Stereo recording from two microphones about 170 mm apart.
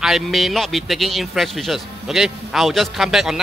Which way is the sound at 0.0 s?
Centre (ahead or behind).